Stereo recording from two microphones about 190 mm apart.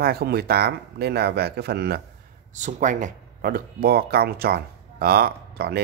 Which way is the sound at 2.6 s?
40° right (ahead or behind).